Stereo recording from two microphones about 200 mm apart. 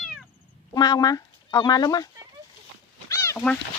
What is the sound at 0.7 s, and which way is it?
Speech, 20° left (ahead or behind).